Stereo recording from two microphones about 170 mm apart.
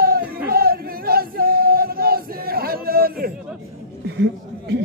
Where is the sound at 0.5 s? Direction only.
60° right (ahead or behind).